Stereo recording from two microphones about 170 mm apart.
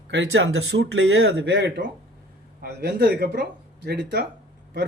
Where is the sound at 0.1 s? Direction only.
90° right.